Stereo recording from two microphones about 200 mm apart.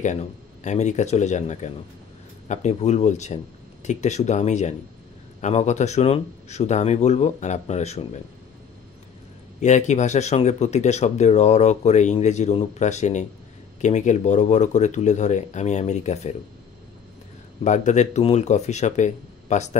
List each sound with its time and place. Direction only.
0.0 s speech: 35° left (ahead or behind)
9.6 s speech: 35° left (ahead or behind)
17.6 s speech: 35° left (ahead or behind)